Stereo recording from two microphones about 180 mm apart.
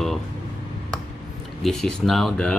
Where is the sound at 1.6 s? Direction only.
Centre (ahead or behind).